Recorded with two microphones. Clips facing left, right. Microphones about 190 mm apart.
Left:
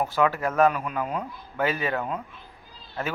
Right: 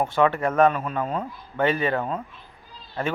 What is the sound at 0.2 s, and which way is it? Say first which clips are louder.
A man's voice: right 2 dB; 5° left (ahead or behind).